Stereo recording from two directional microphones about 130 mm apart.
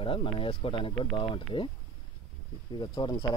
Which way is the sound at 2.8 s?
35° left (ahead or behind).